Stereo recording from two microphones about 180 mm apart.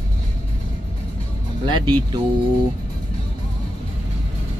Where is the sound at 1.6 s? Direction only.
25° right (ahead or behind).